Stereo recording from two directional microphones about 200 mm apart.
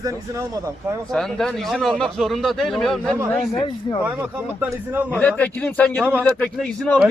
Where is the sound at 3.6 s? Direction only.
25° left (ahead or behind).